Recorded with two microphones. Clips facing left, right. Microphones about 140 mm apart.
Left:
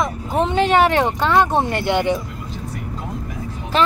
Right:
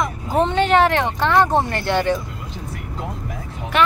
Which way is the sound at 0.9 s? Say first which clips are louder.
Left 1 dB; 15° left (ahead or behind).